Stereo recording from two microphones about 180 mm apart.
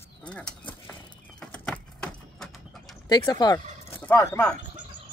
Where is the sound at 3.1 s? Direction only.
25° left (ahead or behind).